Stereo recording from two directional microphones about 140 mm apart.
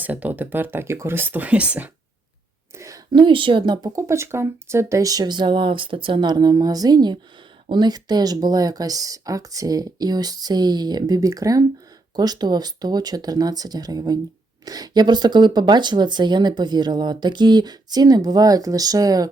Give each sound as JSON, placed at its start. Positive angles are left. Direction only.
{"t": 0.0, "sound": "speech", "side_deg": -10}
{"t": 2.7, "sound": "whispering", "side_deg": -25}
{"t": 3.2, "sound": "speech", "side_deg": -35}